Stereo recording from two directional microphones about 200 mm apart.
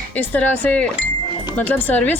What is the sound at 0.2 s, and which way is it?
A woman's voice, 10° left (ahead or behind).